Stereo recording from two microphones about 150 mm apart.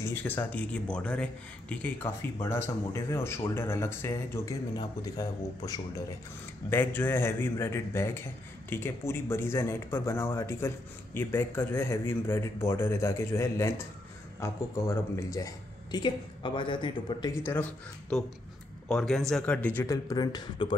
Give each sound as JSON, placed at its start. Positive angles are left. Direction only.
{"t": 0.0, "sound": "speech", "side_deg": 10}
{"t": 6.7, "sound": "a woman's voice", "side_deg": 15}
{"t": 17.5, "sound": "speech", "side_deg": 10}
{"t": 18.9, "sound": "speech", "side_deg": 0}